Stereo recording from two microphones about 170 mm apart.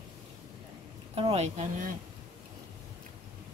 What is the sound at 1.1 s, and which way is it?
Speech, 35° right (ahead or behind).